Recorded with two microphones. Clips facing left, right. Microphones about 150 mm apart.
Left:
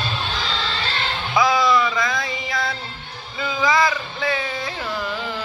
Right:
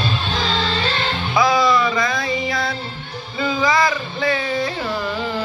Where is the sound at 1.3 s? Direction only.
Centre (ahead or behind).